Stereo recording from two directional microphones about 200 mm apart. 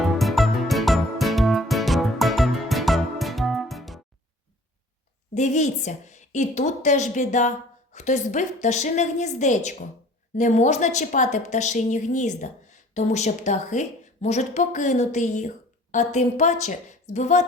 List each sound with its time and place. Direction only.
0.0 s music: centre (ahead or behind)
5.3 s a woman's voice: 35° left (ahead or behind)